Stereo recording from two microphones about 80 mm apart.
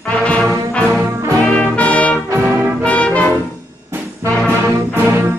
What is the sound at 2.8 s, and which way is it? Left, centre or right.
Brass instrument, centre.